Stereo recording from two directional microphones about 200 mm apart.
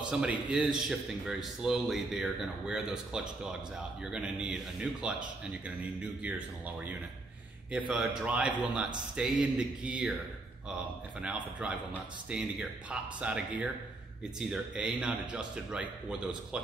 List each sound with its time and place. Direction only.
0.1 s a man's voice: 5° right (ahead or behind)
7.9 s a man's voice: 5° right (ahead or behind)
11.1 s a man's voice: 5° right (ahead or behind)